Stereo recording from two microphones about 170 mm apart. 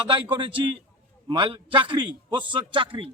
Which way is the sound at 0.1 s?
30° right (ahead or behind).